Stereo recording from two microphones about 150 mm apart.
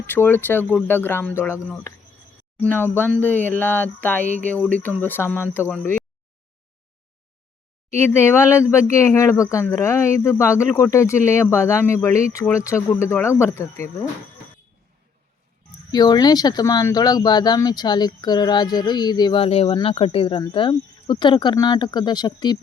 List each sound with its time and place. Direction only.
0.0 s speech: 15° left (ahead or behind)
7.9 s speech: 15° left (ahead or behind)
15.9 s speech: 25° left (ahead or behind)